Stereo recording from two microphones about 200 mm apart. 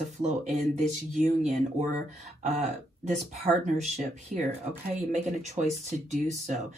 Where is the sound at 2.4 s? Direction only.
35° right (ahead or behind).